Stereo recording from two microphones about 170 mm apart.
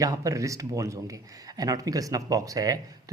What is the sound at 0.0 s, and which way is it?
Speech, 20° right (ahead or behind).